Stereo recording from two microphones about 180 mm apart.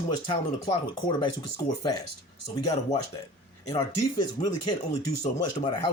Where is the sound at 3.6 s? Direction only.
20° left (ahead or behind).